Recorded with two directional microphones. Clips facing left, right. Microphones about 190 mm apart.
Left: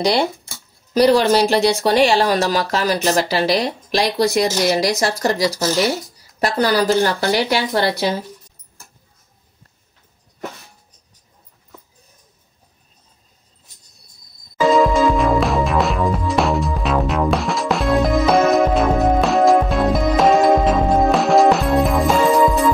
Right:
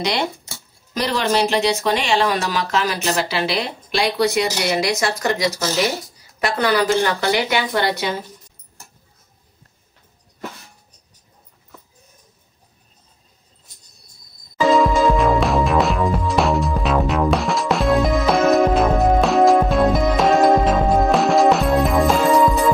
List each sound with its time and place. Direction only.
0.9 s speech: 35° left (ahead or behind)
14.6 s music: centre (ahead or behind)